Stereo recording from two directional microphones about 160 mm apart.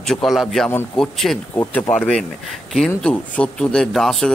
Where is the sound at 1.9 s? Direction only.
5° left (ahead or behind).